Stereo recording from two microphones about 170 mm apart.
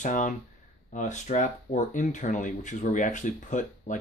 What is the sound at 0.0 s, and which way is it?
Speech, 45° left (ahead or behind).